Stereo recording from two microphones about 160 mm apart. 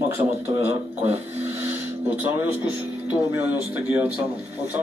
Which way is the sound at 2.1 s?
10° right (ahead or behind).